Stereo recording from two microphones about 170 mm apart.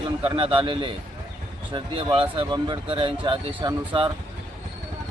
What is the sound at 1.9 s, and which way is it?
Speech, 30° right (ahead or behind).